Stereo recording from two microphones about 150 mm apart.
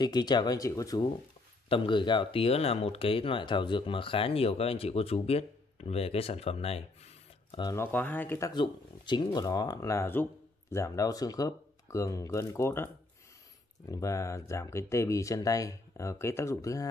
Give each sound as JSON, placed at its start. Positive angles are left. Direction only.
{"t": 0.0, "sound": "speech", "side_deg": 25}
{"t": 1.7, "sound": "speech", "side_deg": 35}
{"t": 7.7, "sound": "speech", "side_deg": 15}
{"t": 8.5, "sound": "speech", "side_deg": 30}